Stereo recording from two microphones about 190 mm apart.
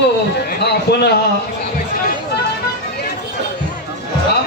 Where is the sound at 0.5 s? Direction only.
60° left (ahead or behind).